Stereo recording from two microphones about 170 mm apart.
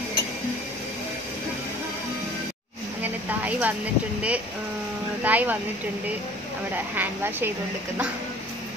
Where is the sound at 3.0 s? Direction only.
10° right (ahead or behind).